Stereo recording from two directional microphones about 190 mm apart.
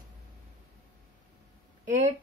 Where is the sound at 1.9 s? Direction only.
40° right (ahead or behind).